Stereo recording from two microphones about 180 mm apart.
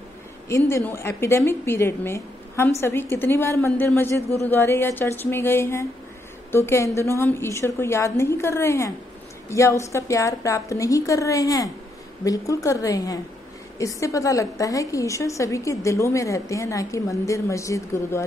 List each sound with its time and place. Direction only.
0.5 s a woman's voice: 15° left (ahead or behind)